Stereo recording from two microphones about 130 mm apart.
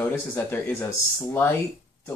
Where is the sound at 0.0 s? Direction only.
15° left (ahead or behind).